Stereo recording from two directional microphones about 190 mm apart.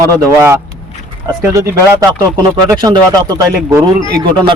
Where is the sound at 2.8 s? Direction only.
20° right (ahead or behind).